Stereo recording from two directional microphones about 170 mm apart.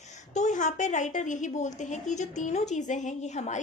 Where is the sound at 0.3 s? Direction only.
45° left (ahead or behind).